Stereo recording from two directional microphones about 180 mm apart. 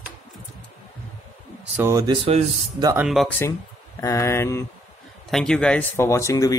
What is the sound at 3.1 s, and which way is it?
Speech, centre (ahead or behind).